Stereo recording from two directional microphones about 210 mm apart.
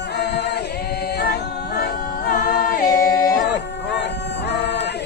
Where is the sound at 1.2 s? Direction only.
50° left (ahead or behind).